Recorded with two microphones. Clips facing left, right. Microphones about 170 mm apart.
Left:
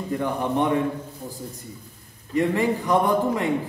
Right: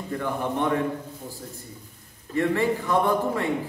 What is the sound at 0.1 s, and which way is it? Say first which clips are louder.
Speech: left 3 dB; 15° left (ahead or behind).